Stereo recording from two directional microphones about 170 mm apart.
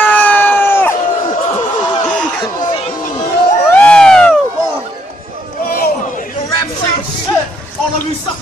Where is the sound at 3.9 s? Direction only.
5° left (ahead or behind).